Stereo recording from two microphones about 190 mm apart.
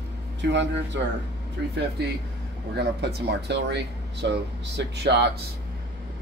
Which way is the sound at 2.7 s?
60° right (ahead or behind).